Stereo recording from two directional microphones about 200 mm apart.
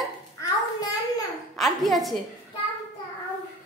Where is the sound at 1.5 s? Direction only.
Centre (ahead or behind).